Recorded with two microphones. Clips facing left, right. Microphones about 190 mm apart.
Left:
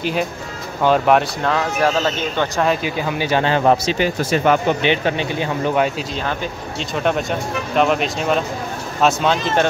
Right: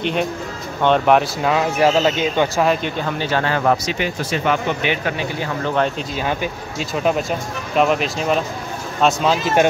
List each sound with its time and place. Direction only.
0.0 s speech: 5° left (ahead or behind)
1.5 s speech: 15° right (ahead or behind)
2.5 s speech: centre (ahead or behind); by 4.1 s 30° left (ahead or behind)
4.2 s speech: 45° left (ahead or behind)
4.8 s speech: 25° left (ahead or behind)
6.2 s speech: 10° right (ahead or behind)